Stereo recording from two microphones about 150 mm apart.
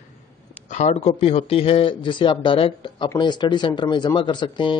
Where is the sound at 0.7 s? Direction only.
50° left (ahead or behind).